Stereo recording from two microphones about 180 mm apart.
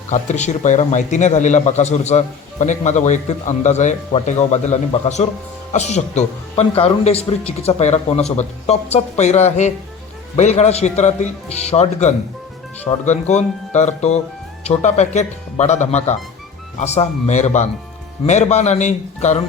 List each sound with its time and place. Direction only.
0.1 s a man's voice: 40° left (ahead or behind)